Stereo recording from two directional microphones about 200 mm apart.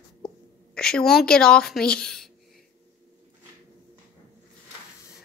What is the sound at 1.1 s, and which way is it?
A woman's voice, 5° left (ahead or behind).